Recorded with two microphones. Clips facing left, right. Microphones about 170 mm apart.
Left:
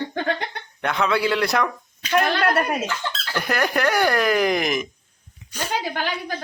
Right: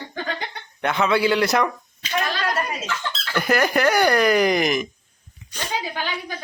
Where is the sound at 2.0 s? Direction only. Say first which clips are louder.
Left 5 dB; 60° left (ahead or behind).